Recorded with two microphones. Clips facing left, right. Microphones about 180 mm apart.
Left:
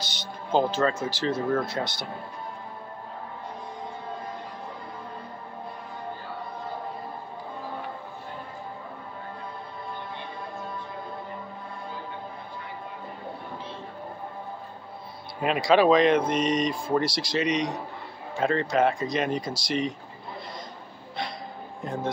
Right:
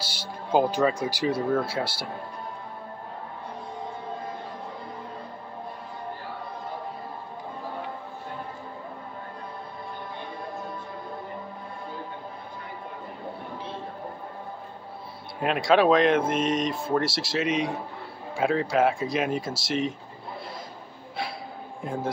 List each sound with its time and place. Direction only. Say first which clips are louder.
0.5 s speech: right 1 dB; 15° right (ahead or behind)
15.4 s speech: even; centre (ahead or behind)
21.8 s speech: even; 10° right (ahead or behind)